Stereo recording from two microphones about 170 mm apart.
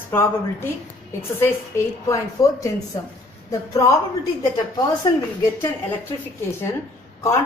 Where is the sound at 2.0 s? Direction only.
20° left (ahead or behind).